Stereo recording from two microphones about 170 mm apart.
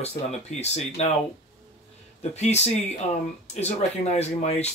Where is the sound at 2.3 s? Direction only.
40° left (ahead or behind).